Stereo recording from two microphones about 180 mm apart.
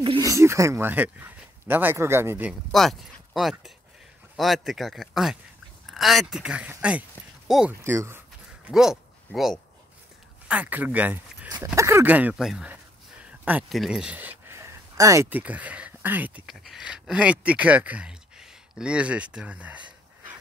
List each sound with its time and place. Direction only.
0.0 s a sound: 30° right (ahead or behind)
0.3 s speech: 15° right (ahead or behind)
2.7 s a man's voice: centre (ahead or behind)
7.8 s speech: 15° right (ahead or behind)
8.6 s a sound: centre (ahead or behind)
10.5 s speech: 10° right (ahead or behind)